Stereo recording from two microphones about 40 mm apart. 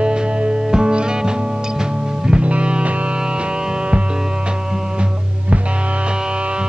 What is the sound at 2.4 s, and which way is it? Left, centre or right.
Music, right.